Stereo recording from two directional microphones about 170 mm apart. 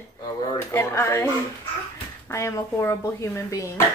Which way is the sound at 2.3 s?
15° left (ahead or behind).